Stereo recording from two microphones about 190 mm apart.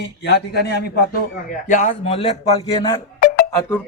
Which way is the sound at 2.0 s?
30° left (ahead or behind).